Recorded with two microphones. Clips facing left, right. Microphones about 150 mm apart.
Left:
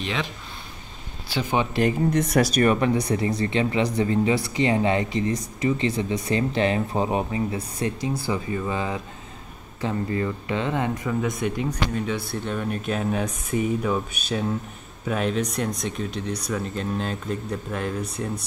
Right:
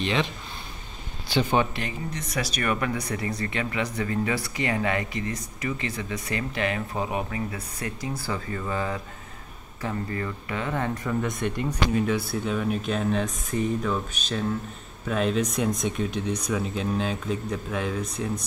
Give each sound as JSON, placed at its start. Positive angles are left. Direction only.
{"t": 0.0, "sound": "speech", "side_deg": 0}
{"t": 1.3, "sound": "speech", "side_deg": 10}
{"t": 1.8, "sound": "speech", "side_deg": 45}
{"t": 2.6, "sound": "speech", "side_deg": 30}
{"t": 11.1, "sound": "speech", "side_deg": 5}